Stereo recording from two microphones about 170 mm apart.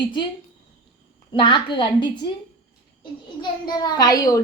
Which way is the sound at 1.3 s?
30° left (ahead or behind).